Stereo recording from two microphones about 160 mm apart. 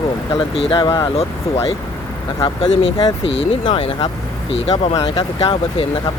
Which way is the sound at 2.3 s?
30° left (ahead or behind).